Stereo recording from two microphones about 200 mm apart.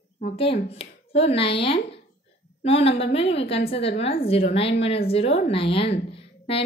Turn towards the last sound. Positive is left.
turn(degrees=30)  # may be behind; listen again after turning